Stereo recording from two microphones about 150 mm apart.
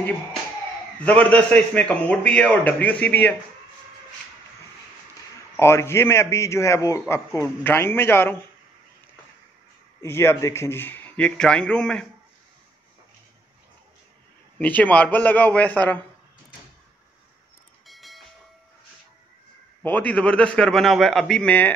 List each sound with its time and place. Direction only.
0.9 s a man's voice: 10° left (ahead or behind)
5.6 s a man's voice: 15° left (ahead or behind)
10.0 s a man's voice: 15° left (ahead or behind)
14.6 s a man's voice: 10° left (ahead or behind)
17.8 s train: centre (ahead or behind)
19.8 s a man's voice: 10° left (ahead or behind)